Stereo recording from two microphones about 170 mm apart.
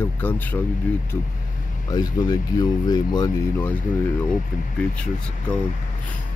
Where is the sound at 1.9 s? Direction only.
20° left (ahead or behind).